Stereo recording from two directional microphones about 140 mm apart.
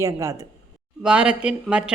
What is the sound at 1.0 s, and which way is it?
Speech, 5° right (ahead or behind).